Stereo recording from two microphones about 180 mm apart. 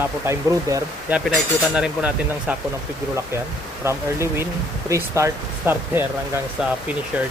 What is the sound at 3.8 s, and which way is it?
Speech, 15° right (ahead or behind).